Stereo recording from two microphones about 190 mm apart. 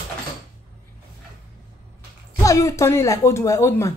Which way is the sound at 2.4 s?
15° left (ahead or behind).